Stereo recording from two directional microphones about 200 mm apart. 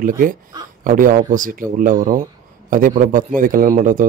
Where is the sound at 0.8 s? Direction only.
45° right (ahead or behind).